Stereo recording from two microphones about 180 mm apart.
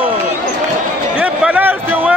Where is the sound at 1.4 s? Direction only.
10° right (ahead or behind).